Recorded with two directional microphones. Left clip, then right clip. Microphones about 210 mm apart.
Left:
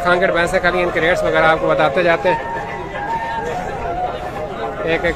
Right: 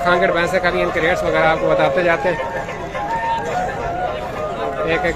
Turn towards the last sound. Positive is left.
turn(degrees=20)  # may be behind; listen again after turning